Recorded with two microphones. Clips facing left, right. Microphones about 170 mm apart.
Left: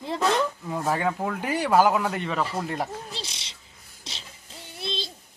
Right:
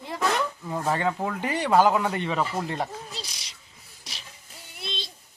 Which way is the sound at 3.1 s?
25° left (ahead or behind).